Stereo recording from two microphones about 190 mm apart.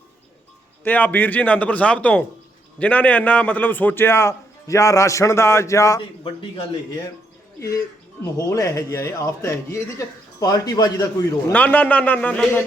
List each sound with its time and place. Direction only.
0.9 s speech: 10° left (ahead or behind)
8.4 s speech: 15° left (ahead or behind)